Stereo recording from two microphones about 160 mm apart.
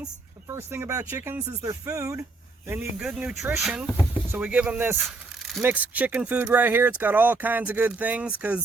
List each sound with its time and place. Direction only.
0.4 s speech: 15° right (ahead or behind)